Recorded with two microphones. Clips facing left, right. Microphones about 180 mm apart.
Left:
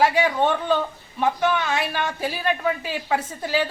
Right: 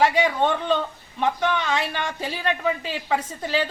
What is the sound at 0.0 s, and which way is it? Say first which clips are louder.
Speech: left 1 dB; 10° left (ahead or behind).